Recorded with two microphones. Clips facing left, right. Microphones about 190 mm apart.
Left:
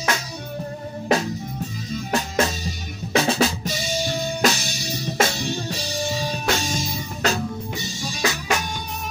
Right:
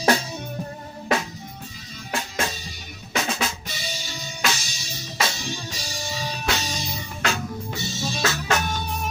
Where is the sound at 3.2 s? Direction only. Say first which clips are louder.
Left 7 dB; 35° left (ahead or behind).